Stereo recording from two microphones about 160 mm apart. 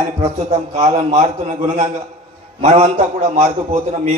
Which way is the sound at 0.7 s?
45° right (ahead or behind).